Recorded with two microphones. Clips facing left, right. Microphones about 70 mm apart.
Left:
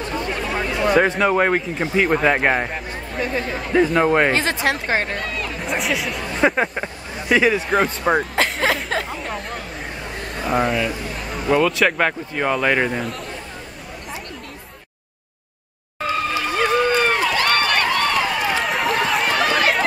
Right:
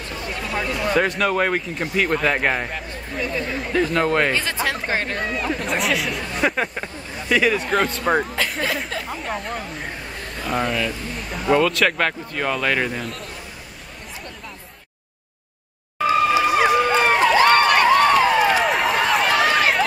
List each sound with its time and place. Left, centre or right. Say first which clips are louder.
0.7 s a sound: left 5 dB; left
1.1 s speech: left 3 dB; centre
3.2 s speech: left 1 dB; left
3.8 s speech: left 3 dB; centre
4.8 s speech: left 2 dB; left
5.1 s speech: right 2 dB; centre
6.4 s speech: left 4 dB; centre
7.5 s speech: left 2 dB; centre
8.4 s a sound: left 4 dB; left
9.1 s chatter: right 1 dB; centre
10.3 s speech: left 3 dB; centre
11.1 s speech: even; centre
16.1 s run: right 5 dB; centre